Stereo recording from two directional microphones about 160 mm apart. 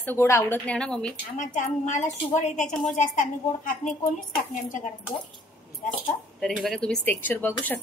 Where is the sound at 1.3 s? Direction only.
50° left (ahead or behind).